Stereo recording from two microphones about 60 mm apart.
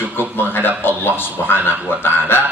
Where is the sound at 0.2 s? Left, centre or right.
Left.